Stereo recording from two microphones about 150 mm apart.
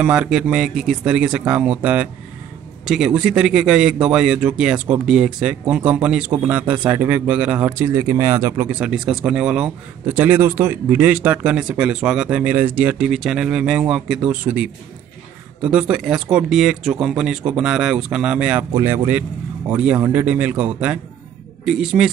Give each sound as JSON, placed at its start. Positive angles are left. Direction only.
{"t": 0.0, "sound": "a man's voice", "side_deg": -5}
{"t": 8.6, "sound": "a man's voice", "side_deg": -5}
{"t": 18.7, "sound": "speech", "side_deg": -20}
{"t": 19.7, "sound": "a man's voice", "side_deg": -10}